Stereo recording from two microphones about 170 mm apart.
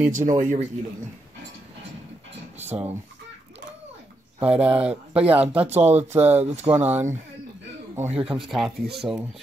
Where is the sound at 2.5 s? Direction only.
40° right (ahead or behind).